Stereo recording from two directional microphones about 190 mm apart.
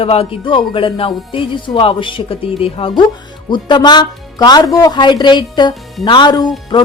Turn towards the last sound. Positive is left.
turn(degrees=25)  # may be behind; listen again after turning